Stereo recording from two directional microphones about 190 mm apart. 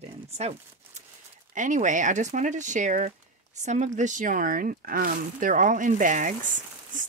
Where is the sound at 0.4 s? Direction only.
35° right (ahead or behind).